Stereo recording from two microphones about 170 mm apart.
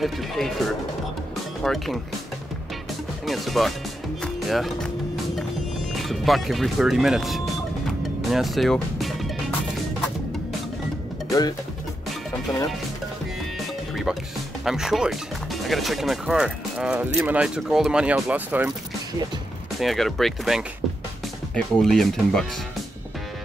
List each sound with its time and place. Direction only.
0.0 s speech: centre (ahead or behind)
3.3 s speech: centre (ahead or behind)
8.0 s music: centre (ahead or behind)
11.2 s speech: 20° left (ahead or behind)
14.6 s speech: centre (ahead or behind)
19.8 s speech: centre (ahead or behind)